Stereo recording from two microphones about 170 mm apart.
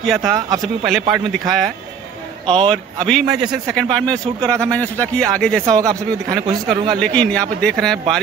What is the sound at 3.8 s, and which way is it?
A man's voice, 5° left (ahead or behind).